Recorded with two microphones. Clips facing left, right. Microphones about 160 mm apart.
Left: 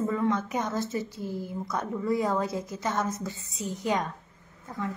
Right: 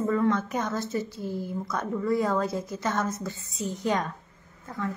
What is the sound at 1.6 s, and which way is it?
A woman's voice, 15° left (ahead or behind).